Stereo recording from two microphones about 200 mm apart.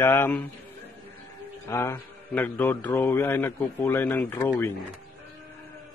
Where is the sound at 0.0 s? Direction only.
10° left (ahead or behind).